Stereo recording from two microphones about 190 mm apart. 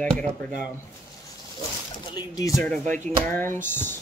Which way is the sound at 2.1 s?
20° left (ahead or behind).